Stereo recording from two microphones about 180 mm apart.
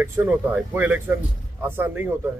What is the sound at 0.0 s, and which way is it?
A man's voice, 10° right (ahead or behind).